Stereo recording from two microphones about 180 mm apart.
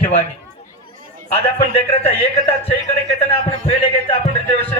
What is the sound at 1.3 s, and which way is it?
A man's voice, 35° left (ahead or behind).